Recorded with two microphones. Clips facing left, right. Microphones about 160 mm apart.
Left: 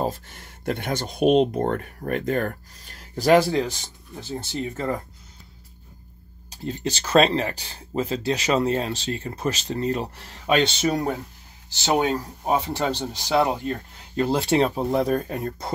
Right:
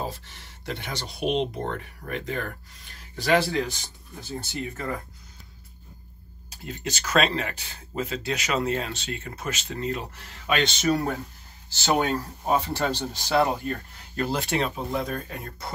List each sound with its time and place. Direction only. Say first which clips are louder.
0.0 s speech: left 6 dB; 50° left (ahead or behind)
3.2 s speech: left 5 dB; 40° left (ahead or behind)
6.5 s speech: left 6 dB; 30° left (ahead or behind)
11.8 s speech: left 2 dB; 15° left (ahead or behind); by 15.7 s 40° left (ahead or behind)